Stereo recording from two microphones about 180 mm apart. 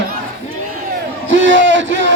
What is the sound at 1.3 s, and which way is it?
Speech, 90° right.